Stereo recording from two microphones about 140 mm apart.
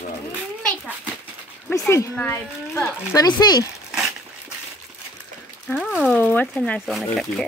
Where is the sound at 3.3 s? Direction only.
30° left (ahead or behind).